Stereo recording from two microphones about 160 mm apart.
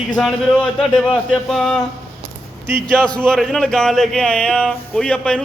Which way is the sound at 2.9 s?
5° left (ahead or behind).